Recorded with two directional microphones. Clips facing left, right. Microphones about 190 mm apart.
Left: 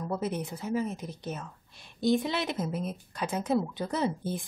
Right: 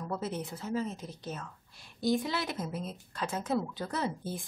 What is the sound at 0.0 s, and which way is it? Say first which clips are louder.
A woman's voice: left 4 dB; 15° left (ahead or behind).